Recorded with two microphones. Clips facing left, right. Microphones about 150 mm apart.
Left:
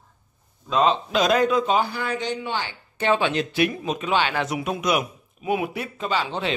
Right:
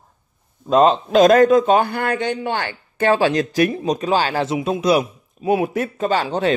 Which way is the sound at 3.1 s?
40° right (ahead or behind).